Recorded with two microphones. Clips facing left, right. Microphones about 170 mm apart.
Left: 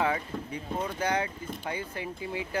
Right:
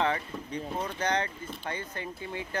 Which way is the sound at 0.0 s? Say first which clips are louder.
Even; 5° left (ahead or behind).